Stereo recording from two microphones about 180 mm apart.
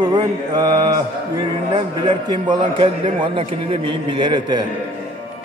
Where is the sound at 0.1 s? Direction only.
20° right (ahead or behind).